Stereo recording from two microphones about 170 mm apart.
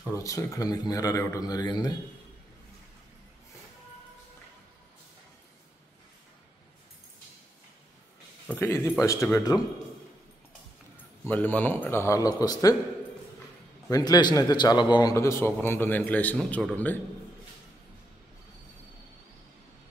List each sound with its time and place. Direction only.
0.1 s speech: 20° left (ahead or behind)
8.5 s a man's voice: 15° left (ahead or behind)
11.2 s a man's voice: 10° left (ahead or behind)
13.8 s a man's voice: 20° left (ahead or behind)